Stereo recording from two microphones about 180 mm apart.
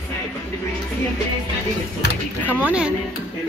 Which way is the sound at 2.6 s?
5° right (ahead or behind).